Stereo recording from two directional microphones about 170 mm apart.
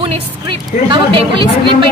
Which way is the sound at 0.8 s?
30° right (ahead or behind).